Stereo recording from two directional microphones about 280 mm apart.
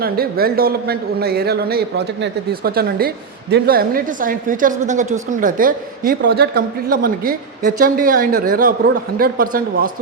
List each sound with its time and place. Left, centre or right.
0.0 s a woman's voice: right